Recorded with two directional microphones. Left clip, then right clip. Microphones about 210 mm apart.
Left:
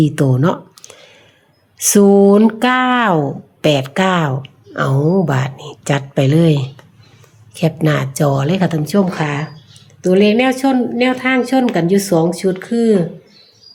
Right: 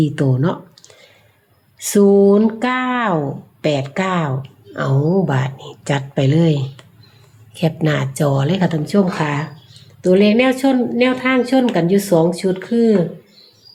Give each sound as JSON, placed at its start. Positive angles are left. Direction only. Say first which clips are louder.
{"t": 0.0, "sound": "speech", "louder": "left 3 dB", "side_deg": 30}